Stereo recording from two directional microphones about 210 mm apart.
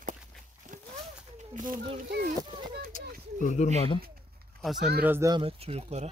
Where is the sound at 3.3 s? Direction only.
35° left (ahead or behind).